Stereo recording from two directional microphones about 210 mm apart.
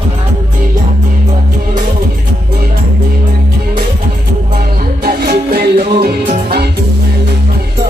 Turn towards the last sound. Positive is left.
turn(degrees=-50)  # may be behind; listen again after turning